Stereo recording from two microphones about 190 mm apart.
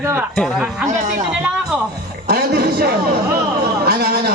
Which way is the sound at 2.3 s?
55° right (ahead or behind).